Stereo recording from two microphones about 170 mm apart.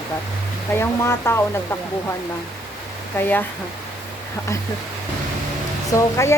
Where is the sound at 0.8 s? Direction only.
15° left (ahead or behind).